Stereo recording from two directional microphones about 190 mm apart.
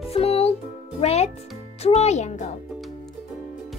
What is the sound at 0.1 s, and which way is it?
Music, 30° left (ahead or behind).